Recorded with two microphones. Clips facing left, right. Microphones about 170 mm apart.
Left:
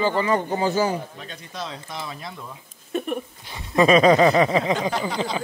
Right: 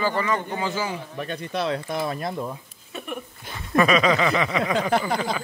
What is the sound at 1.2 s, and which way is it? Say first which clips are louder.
Speech: right 7 dB; 60° right (ahead or behind).